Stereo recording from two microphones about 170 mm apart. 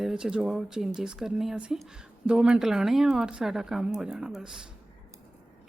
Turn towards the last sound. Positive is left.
turn(degrees=-5)  # may be behind; listen again after turning